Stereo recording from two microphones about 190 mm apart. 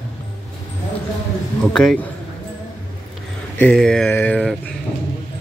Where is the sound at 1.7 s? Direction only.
5° left (ahead or behind).